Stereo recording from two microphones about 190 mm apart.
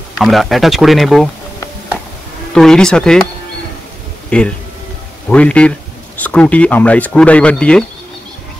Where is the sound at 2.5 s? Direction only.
5° left (ahead or behind).